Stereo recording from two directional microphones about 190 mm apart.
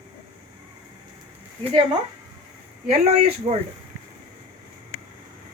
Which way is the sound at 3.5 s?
35° right (ahead or behind).